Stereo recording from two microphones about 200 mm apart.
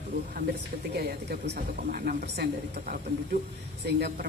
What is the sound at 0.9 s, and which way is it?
A woman's voice, 50° right (ahead or behind).